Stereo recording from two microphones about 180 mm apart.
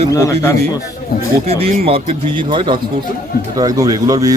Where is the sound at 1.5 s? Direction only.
35° right (ahead or behind).